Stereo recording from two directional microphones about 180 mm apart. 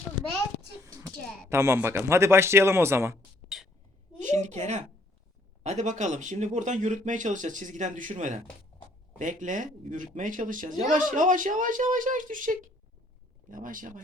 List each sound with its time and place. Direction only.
0.9 s speech: 20° right (ahead or behind)
4.3 s a woman's voice: 40° right (ahead or behind)